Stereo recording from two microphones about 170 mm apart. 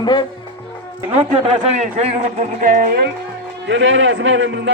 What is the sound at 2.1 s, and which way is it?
Speech, 40° right (ahead or behind).